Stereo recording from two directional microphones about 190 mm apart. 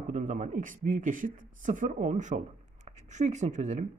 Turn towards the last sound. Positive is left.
turn(degrees=-40)  # may be behind; listen again after turning